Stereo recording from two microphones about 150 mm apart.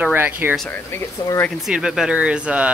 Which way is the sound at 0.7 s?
15° left (ahead or behind).